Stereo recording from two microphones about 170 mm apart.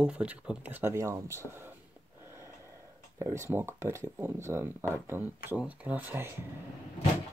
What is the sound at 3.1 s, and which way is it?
Speech, 15° right (ahead or behind).